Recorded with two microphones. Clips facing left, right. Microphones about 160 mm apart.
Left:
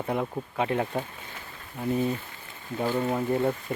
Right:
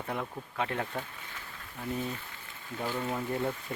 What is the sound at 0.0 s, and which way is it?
Speech, 10° left (ahead or behind).